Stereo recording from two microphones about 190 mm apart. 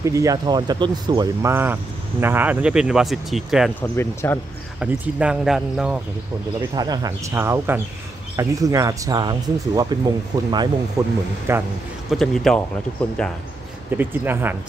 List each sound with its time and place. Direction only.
0.0 s speech: 15° right (ahead or behind); by 3.9 s centre (ahead or behind)
3.9 s speech: 15° left (ahead or behind)
4.7 s speech: 5° right (ahead or behind)
6.7 s speech: 20° right (ahead or behind)
12.1 s speech: centre (ahead or behind)
13.9 s speech: 10° right (ahead or behind)